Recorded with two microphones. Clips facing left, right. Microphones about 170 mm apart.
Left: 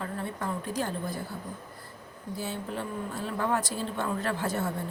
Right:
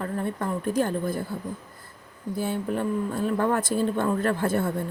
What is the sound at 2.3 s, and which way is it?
Speech, 55° right (ahead or behind).